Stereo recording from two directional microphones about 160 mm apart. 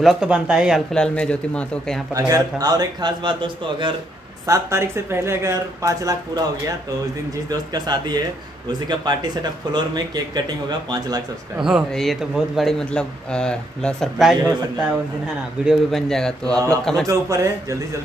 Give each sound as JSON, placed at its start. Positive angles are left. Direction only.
{"t": 0.0, "sound": "a man's voice", "side_deg": -5}
{"t": 2.1, "sound": "speech", "side_deg": -20}
{"t": 4.5, "sound": "speech", "side_deg": -15}
{"t": 7.4, "sound": "speech", "side_deg": -25}
{"t": 11.5, "sound": "a man's voice", "side_deg": -5}
{"t": 15.6, "sound": "a man's voice", "side_deg": 0}
{"t": 16.5, "sound": "speech", "side_deg": -20}
{"t": 16.8, "sound": "a man's voice", "side_deg": 5}
{"t": 17.1, "sound": "speech", "side_deg": -20}